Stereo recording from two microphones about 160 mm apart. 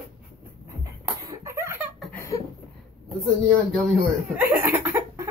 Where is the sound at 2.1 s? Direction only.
15° left (ahead or behind).